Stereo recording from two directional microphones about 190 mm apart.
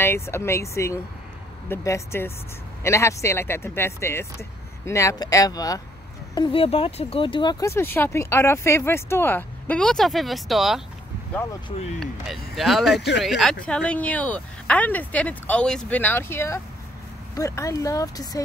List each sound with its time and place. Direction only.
0.0 s speech: 15° left (ahead or behind)
12.0 s speech: centre (ahead or behind)
12.9 s speech: 65° left (ahead or behind)
13.2 s speech: centre (ahead or behind); by 18.4 s 20° left (ahead or behind)